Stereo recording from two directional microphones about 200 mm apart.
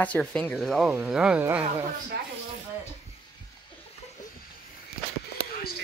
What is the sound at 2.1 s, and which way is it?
Speech, 50° right (ahead or behind).